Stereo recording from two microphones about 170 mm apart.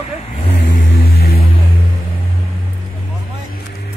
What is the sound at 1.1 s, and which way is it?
Music, 65° left (ahead or behind).